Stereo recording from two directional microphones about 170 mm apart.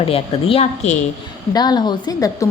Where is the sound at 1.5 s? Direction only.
25° left (ahead or behind).